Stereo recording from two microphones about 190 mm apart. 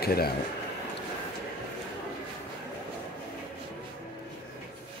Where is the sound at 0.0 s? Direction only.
55° left (ahead or behind).